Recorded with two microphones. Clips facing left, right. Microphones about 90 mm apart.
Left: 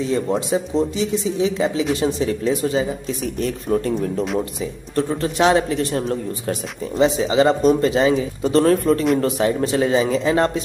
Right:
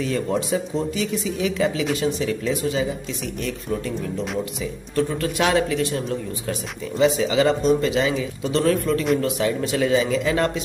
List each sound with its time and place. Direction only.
0.0 s speech: 25° left (ahead or behind); by 4.1 s 45° left (ahead or behind)
4.9 s speech: 30° left (ahead or behind)